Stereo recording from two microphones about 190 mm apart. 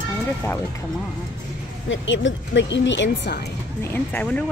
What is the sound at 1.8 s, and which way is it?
Speech, 80° left.